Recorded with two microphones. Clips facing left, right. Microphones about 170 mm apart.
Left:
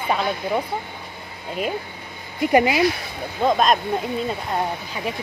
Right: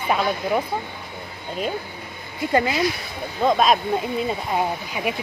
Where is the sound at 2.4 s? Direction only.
15° left (ahead or behind).